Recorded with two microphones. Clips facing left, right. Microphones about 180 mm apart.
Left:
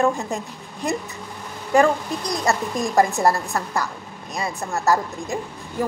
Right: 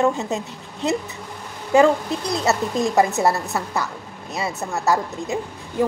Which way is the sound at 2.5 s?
5° right (ahead or behind).